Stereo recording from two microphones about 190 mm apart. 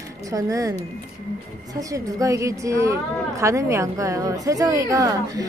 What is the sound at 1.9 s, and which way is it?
A woman's voice, 15° right (ahead or behind).